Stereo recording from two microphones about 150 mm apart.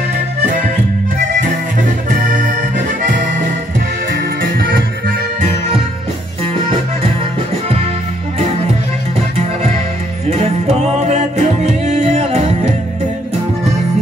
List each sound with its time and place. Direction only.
2.0 s accordion: 55° right (ahead or behind)
4.2 s music: 90° right
10.3 s music: 45° right (ahead or behind)